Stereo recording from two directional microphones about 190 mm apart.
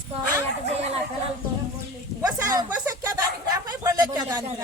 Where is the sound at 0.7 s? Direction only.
35° right (ahead or behind).